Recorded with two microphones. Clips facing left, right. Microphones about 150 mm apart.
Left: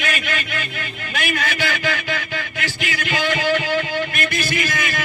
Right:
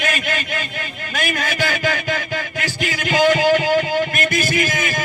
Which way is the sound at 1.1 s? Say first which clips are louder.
Right 1 dB; 45° right (ahead or behind).